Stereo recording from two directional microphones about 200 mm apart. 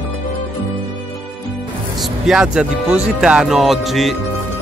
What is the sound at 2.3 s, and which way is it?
Speech, 5° right (ahead or behind).